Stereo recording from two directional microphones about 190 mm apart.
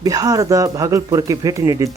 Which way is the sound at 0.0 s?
20° right (ahead or behind).